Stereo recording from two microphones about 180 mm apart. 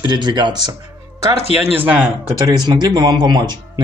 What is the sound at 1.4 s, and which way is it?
Speech, 35° left (ahead or behind).